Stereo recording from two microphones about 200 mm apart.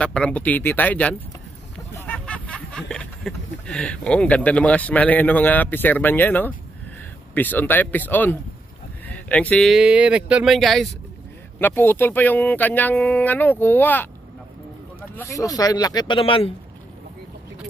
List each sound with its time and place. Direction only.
0.0 s speech: 5° left (ahead or behind)
1.8 s a sound: 10° left (ahead or behind)
7.3 s speech: 10° left (ahead or behind); by 16.5 s 25° left (ahead or behind)